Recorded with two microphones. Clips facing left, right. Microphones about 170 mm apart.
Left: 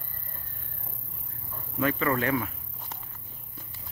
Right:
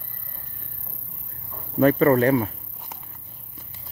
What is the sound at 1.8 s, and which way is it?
Speech, 40° right (ahead or behind).